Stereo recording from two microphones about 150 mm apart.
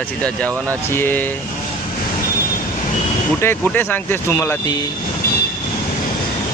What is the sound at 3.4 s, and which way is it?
Speech, 15° left (ahead or behind).